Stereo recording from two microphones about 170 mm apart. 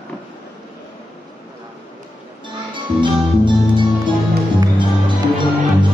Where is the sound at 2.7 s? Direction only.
30° right (ahead or behind).